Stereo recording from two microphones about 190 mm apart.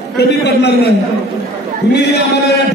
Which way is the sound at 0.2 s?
60° left (ahead or behind).